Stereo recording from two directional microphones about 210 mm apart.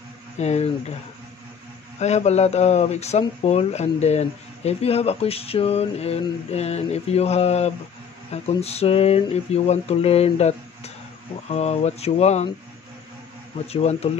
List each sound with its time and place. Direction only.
0.4 s speech: 30° left (ahead or behind)
2.0 s speech: 30° left (ahead or behind)
13.7 s speech: 30° left (ahead or behind)